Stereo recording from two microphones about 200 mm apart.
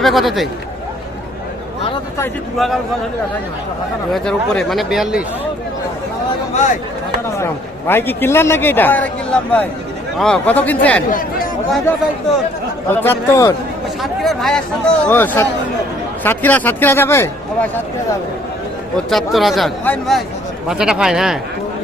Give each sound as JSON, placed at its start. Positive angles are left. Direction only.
{"t": 0.0, "sound": "speech", "side_deg": 0}
{"t": 2.6, "sound": "speech", "side_deg": 0}
{"t": 4.1, "sound": "speech", "side_deg": 0}
{"t": 6.5, "sound": "speech", "side_deg": 35}
{"t": 7.3, "sound": "a man's voice", "side_deg": 10}
{"t": 10.2, "sound": "a man's voice", "side_deg": 5}
{"t": 11.1, "sound": "speech", "side_deg": 45}
{"t": 12.9, "sound": "a man's voice", "side_deg": 10}
{"t": 14.0, "sound": "a man's voice", "side_deg": 0}
{"t": 19.1, "sound": "speech", "side_deg": 0}